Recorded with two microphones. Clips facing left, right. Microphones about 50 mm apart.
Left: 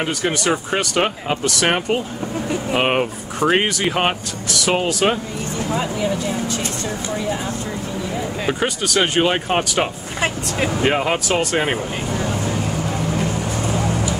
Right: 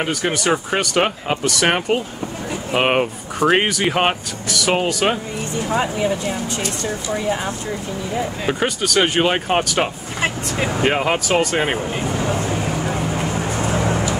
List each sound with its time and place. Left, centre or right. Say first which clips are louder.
0.0 s speech: even; centre
5.8 s speech: right 2 dB; right
8.5 s speech: even; centre
12.4 s vehicle: right 1 dB; right